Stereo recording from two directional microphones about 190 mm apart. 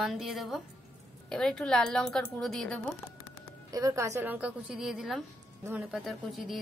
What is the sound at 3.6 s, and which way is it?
A woman's voice, 20° right (ahead or behind).